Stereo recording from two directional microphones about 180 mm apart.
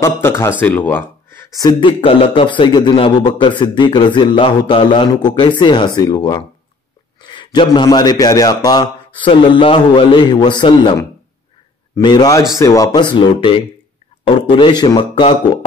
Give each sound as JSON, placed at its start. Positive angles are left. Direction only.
{"t": 0.0, "sound": "speech", "side_deg": 15}
{"t": 1.6, "sound": "speech", "side_deg": 25}